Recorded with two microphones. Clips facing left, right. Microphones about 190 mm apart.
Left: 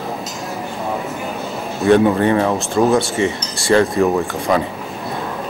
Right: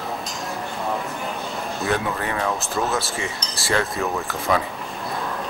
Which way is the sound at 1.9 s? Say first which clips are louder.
Left 14 dB; 30° left (ahead or behind).